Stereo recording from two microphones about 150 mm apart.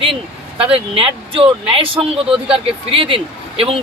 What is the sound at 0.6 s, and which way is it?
Speech, 40° right (ahead or behind).